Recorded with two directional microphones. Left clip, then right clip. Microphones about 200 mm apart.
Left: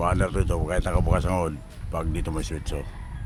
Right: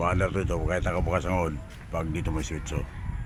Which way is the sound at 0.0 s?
5° left (ahead or behind).